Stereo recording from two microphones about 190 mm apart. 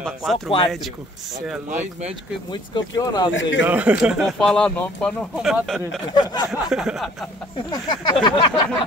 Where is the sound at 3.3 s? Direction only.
75° left (ahead or behind).